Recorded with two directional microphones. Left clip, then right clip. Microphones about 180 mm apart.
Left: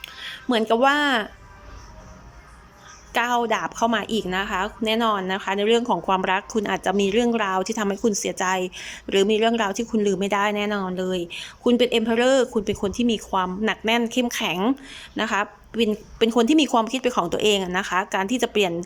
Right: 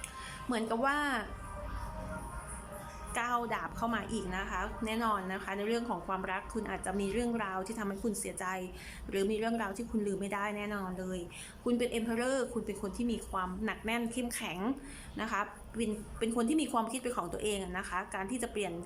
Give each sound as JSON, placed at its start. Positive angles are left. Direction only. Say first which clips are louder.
{"t": 0.5, "sound": "a woman's voice", "louder": "left 14 dB", "side_deg": 50}
{"t": 3.1, "sound": "a woman's voice", "louder": "left 12 dB", "side_deg": 50}
{"t": 12.9, "sound": "speech", "louder": "left 13 dB", "side_deg": 5}
{"t": 13.3, "sound": "a woman's voice", "louder": "left 13 dB", "side_deg": 50}